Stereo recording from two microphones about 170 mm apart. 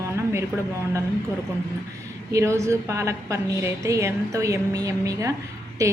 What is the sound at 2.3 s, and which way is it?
A woman's voice, 15° right (ahead or behind).